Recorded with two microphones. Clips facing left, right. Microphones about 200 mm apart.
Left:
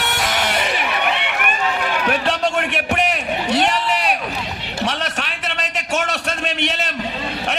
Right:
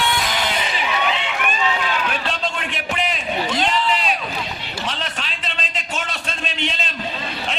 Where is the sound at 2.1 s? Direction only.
65° left (ahead or behind).